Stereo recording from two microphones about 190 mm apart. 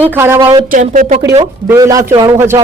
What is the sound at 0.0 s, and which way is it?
Speech, 10° right (ahead or behind).